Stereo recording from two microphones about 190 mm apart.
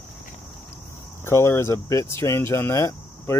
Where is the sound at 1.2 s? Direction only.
15° left (ahead or behind).